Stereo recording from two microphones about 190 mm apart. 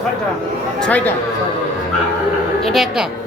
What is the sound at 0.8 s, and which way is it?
Speech, 10° left (ahead or behind).